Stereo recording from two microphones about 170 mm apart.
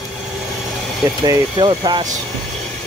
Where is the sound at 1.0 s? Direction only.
25° right (ahead or behind).